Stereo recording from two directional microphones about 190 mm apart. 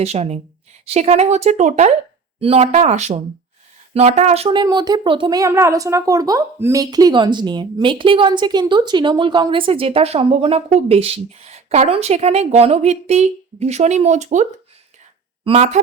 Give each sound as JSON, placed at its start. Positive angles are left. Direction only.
{"t": 0.0, "sound": "speech", "side_deg": -35}
{"t": 15.4, "sound": "speech", "side_deg": -35}